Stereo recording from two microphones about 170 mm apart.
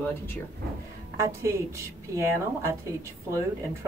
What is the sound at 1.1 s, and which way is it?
Speech, 15° right (ahead or behind).